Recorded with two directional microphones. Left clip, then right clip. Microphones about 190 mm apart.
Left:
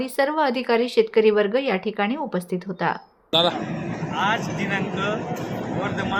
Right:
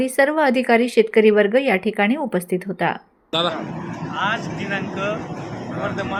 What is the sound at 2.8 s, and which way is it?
Speech, 5° right (ahead or behind).